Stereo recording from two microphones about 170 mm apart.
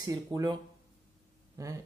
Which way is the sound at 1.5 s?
20° right (ahead or behind).